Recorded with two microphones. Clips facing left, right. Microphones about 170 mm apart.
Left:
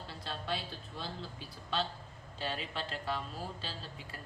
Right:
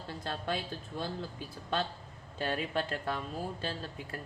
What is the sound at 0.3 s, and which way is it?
Speech, 50° right (ahead or behind).